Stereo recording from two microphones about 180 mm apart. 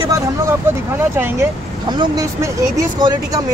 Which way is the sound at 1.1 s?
10° right (ahead or behind).